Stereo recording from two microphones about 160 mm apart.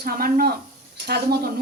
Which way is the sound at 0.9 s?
90° right.